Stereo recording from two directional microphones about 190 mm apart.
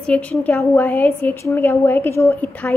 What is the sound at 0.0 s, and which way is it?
A woman's voice, 5° left (ahead or behind).